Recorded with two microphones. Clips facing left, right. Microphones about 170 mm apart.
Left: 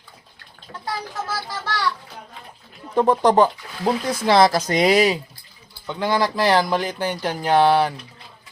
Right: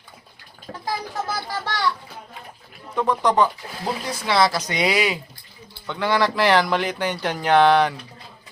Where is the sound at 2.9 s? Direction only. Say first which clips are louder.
Left 4 dB; 35° left (ahead or behind).